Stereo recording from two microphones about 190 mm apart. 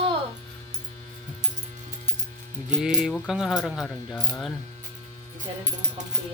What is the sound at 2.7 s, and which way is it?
Speech, 5° right (ahead or behind).